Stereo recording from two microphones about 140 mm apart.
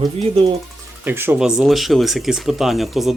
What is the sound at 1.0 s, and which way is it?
Speech, 15° right (ahead or behind).